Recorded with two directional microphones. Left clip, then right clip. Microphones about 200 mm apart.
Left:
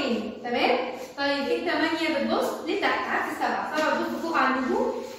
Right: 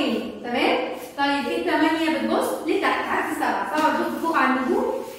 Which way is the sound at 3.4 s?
Centre (ahead or behind).